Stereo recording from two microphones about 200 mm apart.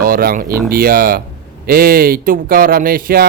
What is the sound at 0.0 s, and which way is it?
Speech, 45° right (ahead or behind).